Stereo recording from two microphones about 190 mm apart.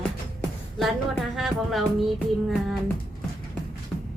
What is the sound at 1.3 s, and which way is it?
Speech, centre (ahead or behind).